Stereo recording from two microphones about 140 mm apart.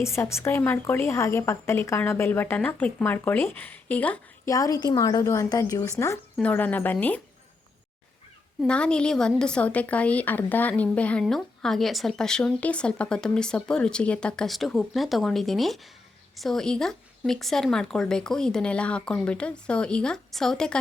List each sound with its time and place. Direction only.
0.0 s a woman's voice: 20° left (ahead or behind)
4.4 s speech: 25° left (ahead or behind)
6.3 s a woman's voice: 10° left (ahead or behind)
8.6 s a woman's voice: 5° left (ahead or behind)